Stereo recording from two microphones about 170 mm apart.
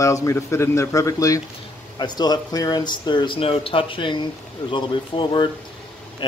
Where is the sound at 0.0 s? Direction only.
20° left (ahead or behind).